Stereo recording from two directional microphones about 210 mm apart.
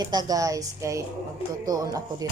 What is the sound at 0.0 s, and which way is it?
A woman's voice, 20° right (ahead or behind).